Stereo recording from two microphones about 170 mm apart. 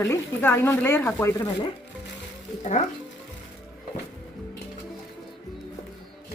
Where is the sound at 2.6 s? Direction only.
40° left (ahead or behind).